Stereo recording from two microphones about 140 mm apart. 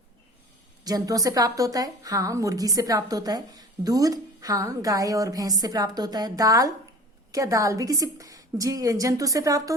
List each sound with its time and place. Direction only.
0.9 s a woman's voice: 25° right (ahead or behind)